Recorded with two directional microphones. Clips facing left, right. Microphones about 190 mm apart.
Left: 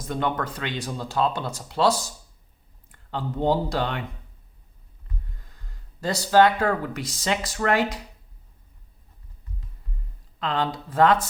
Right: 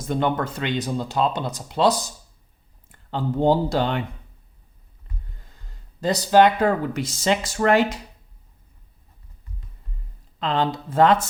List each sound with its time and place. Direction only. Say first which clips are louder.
0.1 s speech: right 4 dB; 25° right (ahead or behind)
6.0 s speech: right 2 dB; 20° right (ahead or behind)
10.4 s speech: right 3 dB; 25° right (ahead or behind)